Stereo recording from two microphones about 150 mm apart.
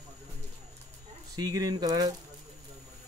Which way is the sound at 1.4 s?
25° right (ahead or behind).